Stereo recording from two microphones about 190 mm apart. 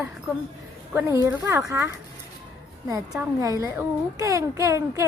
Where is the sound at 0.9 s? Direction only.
10° right (ahead or behind).